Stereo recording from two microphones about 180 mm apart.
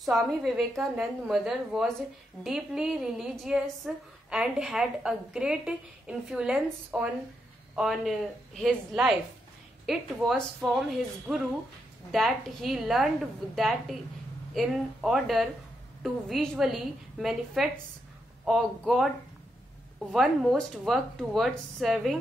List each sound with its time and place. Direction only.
0.0 s a woman's voice: centre (ahead or behind)
20.1 s a woman's voice: centre (ahead or behind)